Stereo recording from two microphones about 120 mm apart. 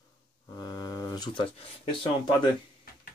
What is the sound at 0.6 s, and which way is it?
Speech, 35° left (ahead or behind).